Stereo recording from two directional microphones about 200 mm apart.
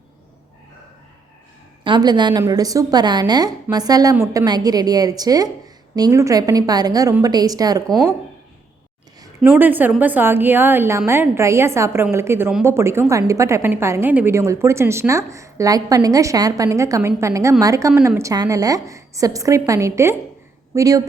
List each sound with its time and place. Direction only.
1.8 s a woman's voice: 20° right (ahead or behind)
9.2 s a woman's voice: 10° right (ahead or behind)